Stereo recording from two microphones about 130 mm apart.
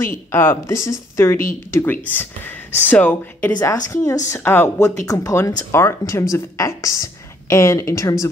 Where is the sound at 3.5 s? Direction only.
25° left (ahead or behind).